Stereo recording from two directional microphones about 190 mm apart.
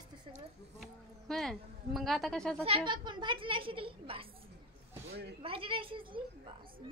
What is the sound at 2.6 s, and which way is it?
A woman's voice, 25° right (ahead or behind).